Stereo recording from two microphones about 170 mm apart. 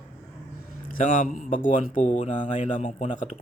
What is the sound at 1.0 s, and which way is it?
Speech, 50° left (ahead or behind).